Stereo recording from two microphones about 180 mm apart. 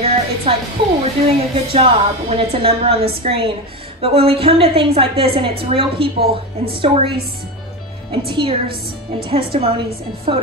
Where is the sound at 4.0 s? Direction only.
30° right (ahead or behind).